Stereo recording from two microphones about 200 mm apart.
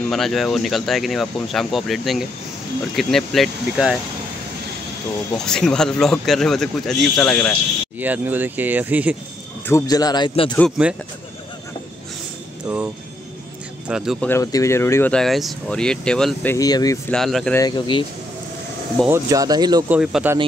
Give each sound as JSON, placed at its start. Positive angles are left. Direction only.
{"t": 0.1, "sound": "speech", "side_deg": 0}
{"t": 5.4, "sound": "speech", "side_deg": 5}
{"t": 8.0, "sound": "speech", "side_deg": -10}
{"t": 9.7, "sound": "speech", "side_deg": 15}
{"t": 12.6, "sound": "speech", "side_deg": -5}
{"t": 14.2, "sound": "speech", "side_deg": 15}
{"t": 16.5, "sound": "speech", "side_deg": 20}
{"t": 17.1, "sound": "speech", "side_deg": 0}
{"t": 17.6, "sound": "speech", "side_deg": 20}
{"t": 19.0, "sound": "speech", "side_deg": -15}
{"t": 19.9, "sound": "speech", "side_deg": -5}